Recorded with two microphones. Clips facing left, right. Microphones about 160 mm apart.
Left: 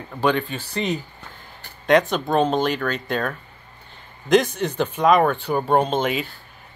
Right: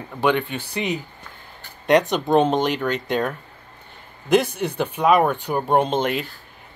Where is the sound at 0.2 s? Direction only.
15° right (ahead or behind).